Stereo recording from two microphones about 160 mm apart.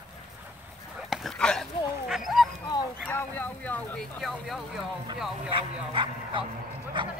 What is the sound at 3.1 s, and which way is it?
Speech, 10° left (ahead or behind).